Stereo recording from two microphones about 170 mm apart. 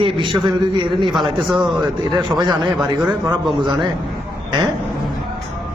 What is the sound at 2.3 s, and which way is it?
A man's voice, 25° right (ahead or behind).